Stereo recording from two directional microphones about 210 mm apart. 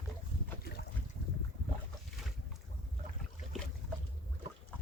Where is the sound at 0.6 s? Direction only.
50° left (ahead or behind).